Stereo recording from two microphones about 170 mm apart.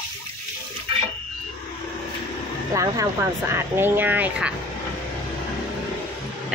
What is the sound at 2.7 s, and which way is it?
Speech, 20° right (ahead or behind).